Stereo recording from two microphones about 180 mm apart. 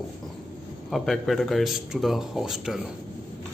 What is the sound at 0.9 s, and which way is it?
A man's voice, centre (ahead or behind).